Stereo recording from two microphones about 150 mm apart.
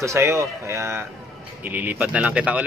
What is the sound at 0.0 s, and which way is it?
Speech, 20° right (ahead or behind).